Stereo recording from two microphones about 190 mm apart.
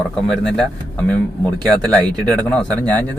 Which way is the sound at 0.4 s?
5° left (ahead or behind).